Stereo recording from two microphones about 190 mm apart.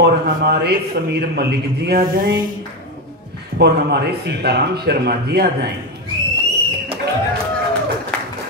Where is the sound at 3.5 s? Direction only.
60° right (ahead or behind).